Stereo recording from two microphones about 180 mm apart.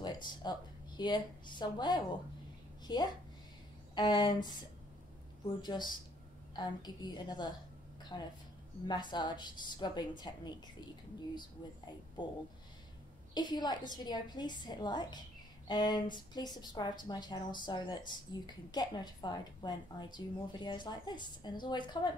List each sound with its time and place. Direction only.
0.0 s a woman's voice: 25° left (ahead or behind)
5.6 s a woman's voice: 25° left (ahead or behind)
13.3 s a woman's voice: 25° left (ahead or behind)